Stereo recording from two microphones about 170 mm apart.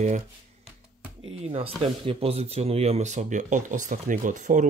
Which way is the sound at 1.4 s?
35° right (ahead or behind).